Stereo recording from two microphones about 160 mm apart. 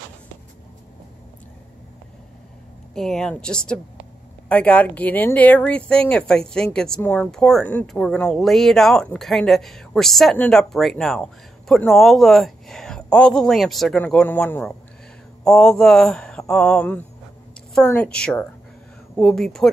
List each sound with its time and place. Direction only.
2.9 s a woman's voice: 5° left (ahead or behind)